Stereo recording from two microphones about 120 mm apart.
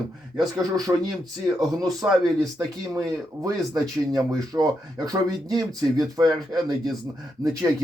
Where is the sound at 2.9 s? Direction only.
25° right (ahead or behind).